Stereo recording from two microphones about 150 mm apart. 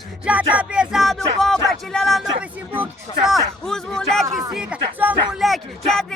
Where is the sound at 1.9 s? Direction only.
Centre (ahead or behind).